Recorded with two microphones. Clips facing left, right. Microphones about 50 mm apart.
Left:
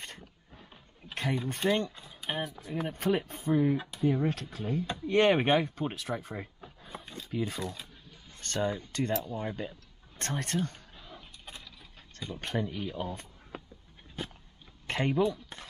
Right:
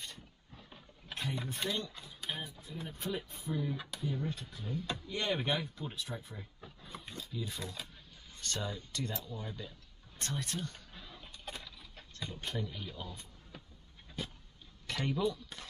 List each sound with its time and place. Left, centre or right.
1.1 s a sound: left
1.6 s speech: left
2.0 s a sound: left
2.4 s speech: left
4.2 s speech: left
6.8 s a sound: left
7.2 s speech: left
7.6 s speech: centre
8.4 s speech: left
11.4 s mechanisms: centre
12.4 s speech: left
14.9 s speech: left